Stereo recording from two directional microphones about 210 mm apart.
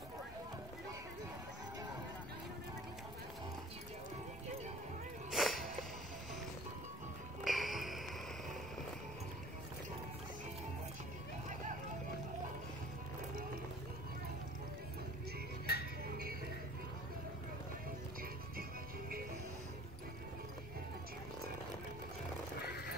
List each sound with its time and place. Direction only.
5.3 s a sound: centre (ahead or behind)
7.4 s music: centre (ahead or behind)
15.7 s music: 50° left (ahead or behind)
16.1 s music: 45° right (ahead or behind)
18.6 s music: 45° right (ahead or behind)